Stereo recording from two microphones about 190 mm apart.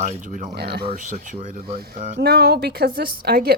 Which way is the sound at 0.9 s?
40° right (ahead or behind).